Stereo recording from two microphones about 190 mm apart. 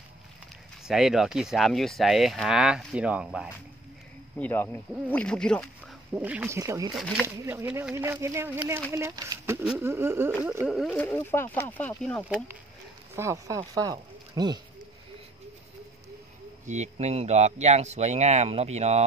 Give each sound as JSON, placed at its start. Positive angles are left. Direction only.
{"t": 0.8, "sound": "speech", "side_deg": 0}
{"t": 4.4, "sound": "speech", "side_deg": 10}
{"t": 6.1, "sound": "speech", "side_deg": -5}
{"t": 7.0, "sound": "speech", "side_deg": 0}
{"t": 7.2, "sound": "speech", "side_deg": -15}
{"t": 13.1, "sound": "speech", "side_deg": -15}
{"t": 16.6, "sound": "speech", "side_deg": -35}